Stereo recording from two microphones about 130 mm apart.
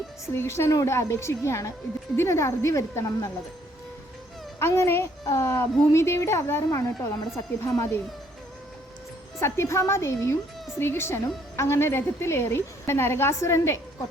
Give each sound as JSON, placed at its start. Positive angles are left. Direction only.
{"t": 0.3, "sound": "speech", "side_deg": 20}
{"t": 4.6, "sound": "speech", "side_deg": 20}
{"t": 9.4, "sound": "speech", "side_deg": 20}